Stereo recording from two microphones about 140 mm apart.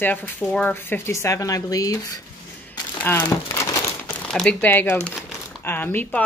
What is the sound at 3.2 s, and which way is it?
Crumpling, 25° left (ahead or behind).